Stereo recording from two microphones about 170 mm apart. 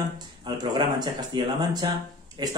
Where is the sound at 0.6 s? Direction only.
25° right (ahead or behind).